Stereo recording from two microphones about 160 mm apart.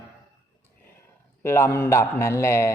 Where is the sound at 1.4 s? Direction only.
15° left (ahead or behind).